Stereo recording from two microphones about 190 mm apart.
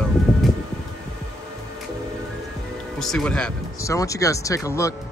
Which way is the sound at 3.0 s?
5° left (ahead or behind).